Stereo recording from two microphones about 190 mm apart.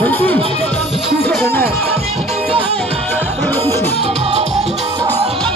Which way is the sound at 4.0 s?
35° right (ahead or behind).